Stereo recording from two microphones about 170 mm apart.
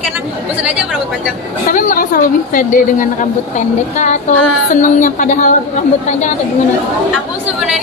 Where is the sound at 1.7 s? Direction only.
50° left (ahead or behind).